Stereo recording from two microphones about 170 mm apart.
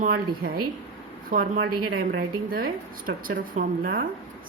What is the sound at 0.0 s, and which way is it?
A woman's voice, 60° right (ahead or behind).